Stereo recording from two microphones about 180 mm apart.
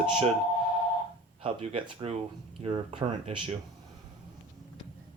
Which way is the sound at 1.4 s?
30° right (ahead or behind).